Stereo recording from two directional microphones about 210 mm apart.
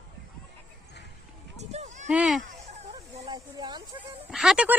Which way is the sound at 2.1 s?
Centre (ahead or behind).